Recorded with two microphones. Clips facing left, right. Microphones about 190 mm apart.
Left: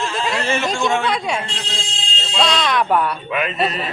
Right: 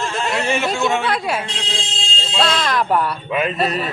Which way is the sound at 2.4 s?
Centre (ahead or behind).